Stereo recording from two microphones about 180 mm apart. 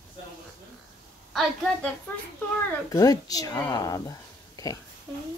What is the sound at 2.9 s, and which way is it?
Speech, 20° left (ahead or behind).